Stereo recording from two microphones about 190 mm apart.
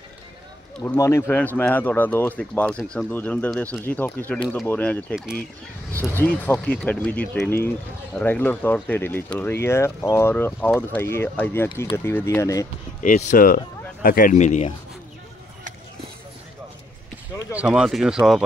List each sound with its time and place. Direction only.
0.8 s speech: 15° left (ahead or behind)
13.0 s speech: 45° left (ahead or behind)
17.6 s speech: 5° right (ahead or behind)